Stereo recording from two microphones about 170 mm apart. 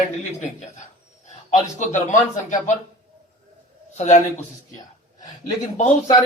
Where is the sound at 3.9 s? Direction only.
45° left (ahead or behind).